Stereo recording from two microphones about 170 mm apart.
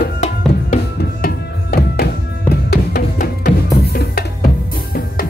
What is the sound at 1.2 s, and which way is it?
Music, 65° left (ahead or behind).